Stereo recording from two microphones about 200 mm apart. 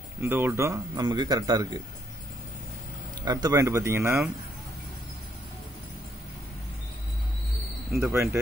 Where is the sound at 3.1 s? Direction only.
20° right (ahead or behind).